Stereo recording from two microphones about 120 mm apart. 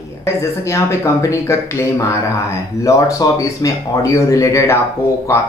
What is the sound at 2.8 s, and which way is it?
Speech, 30° left (ahead or behind).